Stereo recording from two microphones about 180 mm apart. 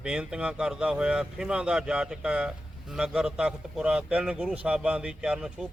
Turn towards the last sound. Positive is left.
turn(degrees=-5)  # may be behind; listen again after turning